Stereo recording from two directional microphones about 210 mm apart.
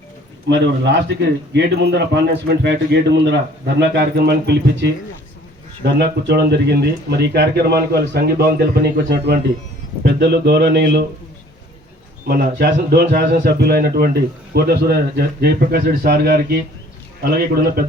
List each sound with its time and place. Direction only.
0.6 s a man's voice: 55° right (ahead or behind)
12.3 s speech: 50° right (ahead or behind)